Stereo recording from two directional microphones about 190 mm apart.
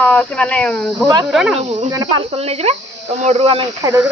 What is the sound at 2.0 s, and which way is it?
Speech, 30° right (ahead or behind).